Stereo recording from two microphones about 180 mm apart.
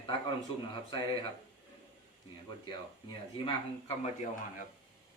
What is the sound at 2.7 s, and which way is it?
Speech, 25° left (ahead or behind).